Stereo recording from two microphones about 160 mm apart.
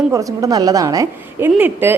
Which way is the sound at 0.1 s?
20° right (ahead or behind).